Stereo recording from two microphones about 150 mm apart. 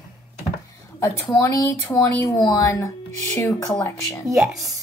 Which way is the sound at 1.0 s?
20° left (ahead or behind).